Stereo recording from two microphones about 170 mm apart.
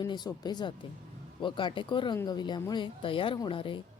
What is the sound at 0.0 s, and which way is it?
A woman's voice, 25° left (ahead or behind).